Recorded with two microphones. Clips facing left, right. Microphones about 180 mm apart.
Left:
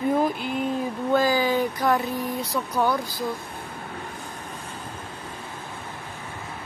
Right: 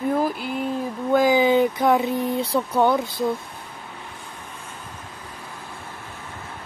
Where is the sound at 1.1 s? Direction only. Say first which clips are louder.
Right 5 dB; 20° right (ahead or behind).